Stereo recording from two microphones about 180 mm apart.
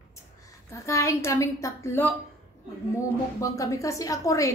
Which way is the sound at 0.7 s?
15° left (ahead or behind).